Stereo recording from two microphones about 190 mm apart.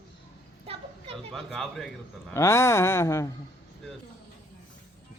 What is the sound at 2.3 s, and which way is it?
Speech, 15° left (ahead or behind).